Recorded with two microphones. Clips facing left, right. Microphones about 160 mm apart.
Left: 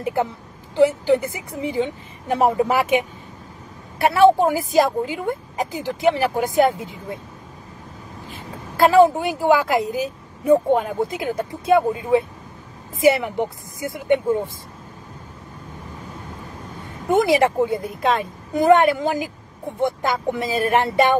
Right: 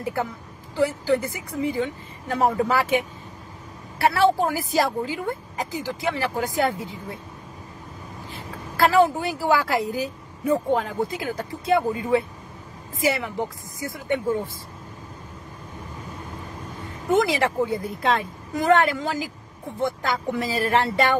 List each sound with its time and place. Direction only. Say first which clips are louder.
0.0 s speech: left 4 dB; 20° left (ahead or behind)
8.7 s speech: left 5 dB; 25° left (ahead or behind)
17.2 s speech: left 8 dB; 20° left (ahead or behind)